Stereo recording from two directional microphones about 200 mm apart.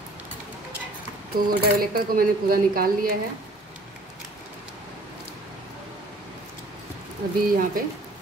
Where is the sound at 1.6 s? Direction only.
50° right (ahead or behind).